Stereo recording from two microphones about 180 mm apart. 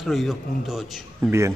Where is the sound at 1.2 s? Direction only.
15° right (ahead or behind).